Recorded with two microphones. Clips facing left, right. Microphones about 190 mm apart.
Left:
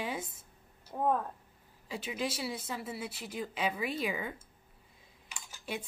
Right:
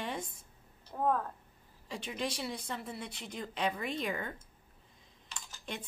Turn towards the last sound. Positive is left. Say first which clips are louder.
# left 3 dB
turn(degrees=10)  # may be behind; listen again after turning